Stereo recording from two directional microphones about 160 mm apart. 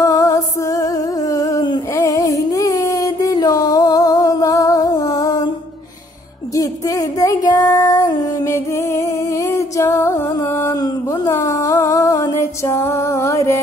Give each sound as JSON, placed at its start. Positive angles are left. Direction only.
{"t": 0.0, "sound": "music", "side_deg": 20}
{"t": 6.5, "sound": "child singing", "side_deg": 20}